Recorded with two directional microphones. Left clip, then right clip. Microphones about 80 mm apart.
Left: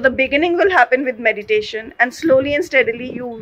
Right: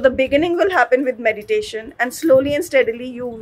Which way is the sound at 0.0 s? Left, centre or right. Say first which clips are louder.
Even; right.